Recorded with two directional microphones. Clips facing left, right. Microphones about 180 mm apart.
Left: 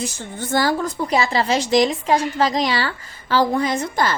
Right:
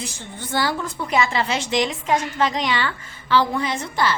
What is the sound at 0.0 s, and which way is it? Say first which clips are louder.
Speech: left 5 dB; 45° left (ahead or behind).